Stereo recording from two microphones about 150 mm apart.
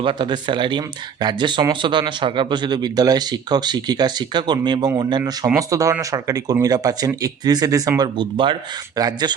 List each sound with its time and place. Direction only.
0.0 s speech: 35° right (ahead or behind)